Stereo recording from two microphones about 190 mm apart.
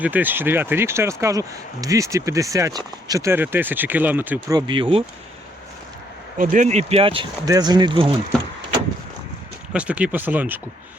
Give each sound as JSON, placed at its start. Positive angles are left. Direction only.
{"t": 0.0, "sound": "speech", "side_deg": -10}
{"t": 6.3, "sound": "speech", "side_deg": -45}
{"t": 9.7, "sound": "speech", "side_deg": -5}